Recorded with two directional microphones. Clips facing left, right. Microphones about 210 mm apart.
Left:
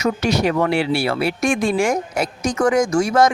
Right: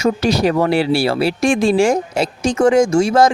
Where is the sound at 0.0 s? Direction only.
35° right (ahead or behind).